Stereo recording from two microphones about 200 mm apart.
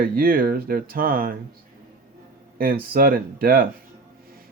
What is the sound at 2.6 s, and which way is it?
Speech, 45° right (ahead or behind).